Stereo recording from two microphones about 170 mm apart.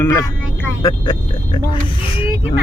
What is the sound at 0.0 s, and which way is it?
Speech, 15° left (ahead or behind).